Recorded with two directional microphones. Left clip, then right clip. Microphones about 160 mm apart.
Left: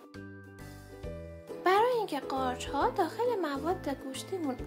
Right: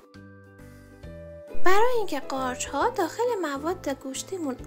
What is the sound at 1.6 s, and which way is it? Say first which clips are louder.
Speech: right 4 dB; 30° right (ahead or behind).